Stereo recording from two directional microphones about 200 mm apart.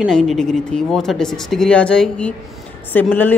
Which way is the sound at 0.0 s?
Centre (ahead or behind).